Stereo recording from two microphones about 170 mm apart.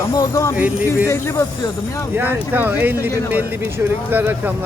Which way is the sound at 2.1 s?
10° right (ahead or behind).